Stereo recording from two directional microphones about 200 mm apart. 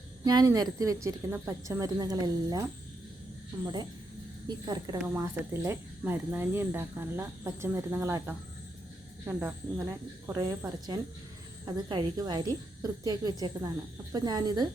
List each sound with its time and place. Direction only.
0.3 s speech: 20° right (ahead or behind)
4.4 s speech: 20° right (ahead or behind)